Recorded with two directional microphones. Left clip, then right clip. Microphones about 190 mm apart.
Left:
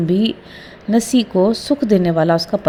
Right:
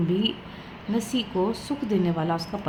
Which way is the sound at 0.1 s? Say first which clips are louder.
Left 8 dB; 40° left (ahead or behind).